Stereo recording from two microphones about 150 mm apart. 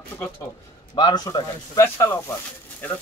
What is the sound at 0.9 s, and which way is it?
Speech, 25° left (ahead or behind).